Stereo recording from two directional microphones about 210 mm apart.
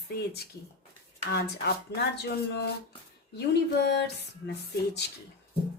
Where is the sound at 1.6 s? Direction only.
50° left (ahead or behind).